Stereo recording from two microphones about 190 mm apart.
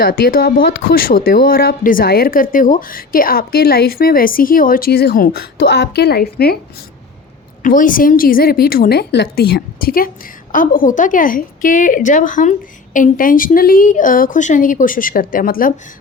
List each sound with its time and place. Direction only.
0.0 s speech: 50° left (ahead or behind)
7.6 s speech: 45° left (ahead or behind)